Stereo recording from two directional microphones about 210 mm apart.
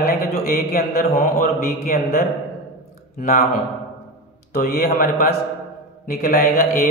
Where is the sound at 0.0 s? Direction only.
45° left (ahead or behind).